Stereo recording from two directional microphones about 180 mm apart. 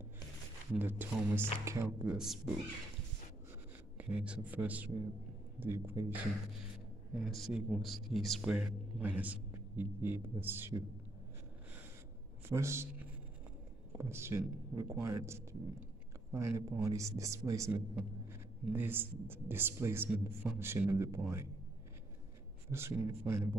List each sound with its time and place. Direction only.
0.7 s a man's voice: 10° right (ahead or behind)
2.1 s speech: centre (ahead or behind)
4.0 s a man's voice: 5° right (ahead or behind)
7.3 s a man's voice: centre (ahead or behind)
12.4 s a man's voice: 15° right (ahead or behind)
22.7 s a man's voice: 15° right (ahead or behind)